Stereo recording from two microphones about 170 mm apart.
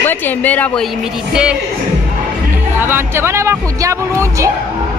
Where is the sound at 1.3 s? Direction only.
5° right (ahead or behind).